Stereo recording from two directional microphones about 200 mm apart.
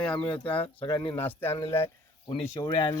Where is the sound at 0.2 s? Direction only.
20° left (ahead or behind).